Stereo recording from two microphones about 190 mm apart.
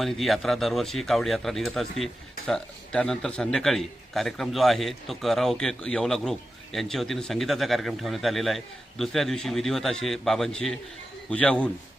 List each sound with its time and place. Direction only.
0.0 s a man's voice: centre (ahead or behind)